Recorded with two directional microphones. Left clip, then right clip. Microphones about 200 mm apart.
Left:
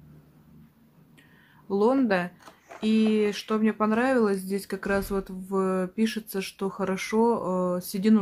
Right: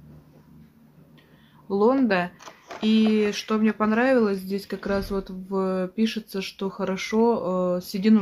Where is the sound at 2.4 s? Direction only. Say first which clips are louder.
Right 6 dB; 30° right (ahead or behind).